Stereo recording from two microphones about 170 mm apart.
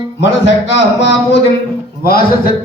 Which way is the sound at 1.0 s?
90° left.